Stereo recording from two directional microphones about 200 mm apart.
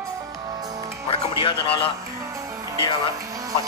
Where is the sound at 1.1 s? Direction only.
25° left (ahead or behind).